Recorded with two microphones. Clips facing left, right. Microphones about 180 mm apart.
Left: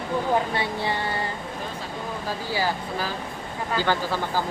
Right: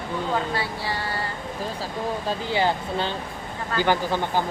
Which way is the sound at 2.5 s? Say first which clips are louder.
Right 3 dB; 25° right (ahead or behind).